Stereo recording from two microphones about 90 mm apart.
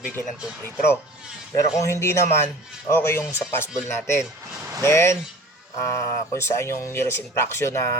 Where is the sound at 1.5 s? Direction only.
35° left (ahead or behind).